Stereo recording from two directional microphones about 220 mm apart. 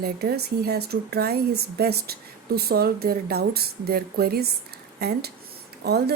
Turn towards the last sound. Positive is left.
turn(degrees=-45)  # may be behind; listen again after turning